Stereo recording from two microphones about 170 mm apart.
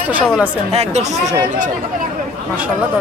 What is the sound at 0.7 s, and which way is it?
Speech, 40° right (ahead or behind).